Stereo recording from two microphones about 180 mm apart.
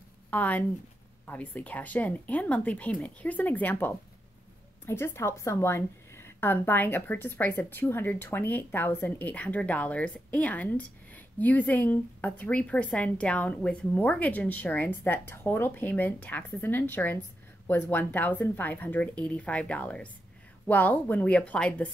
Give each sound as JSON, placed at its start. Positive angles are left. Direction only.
{"t": 0.3, "sound": "a woman's voice", "side_deg": 10}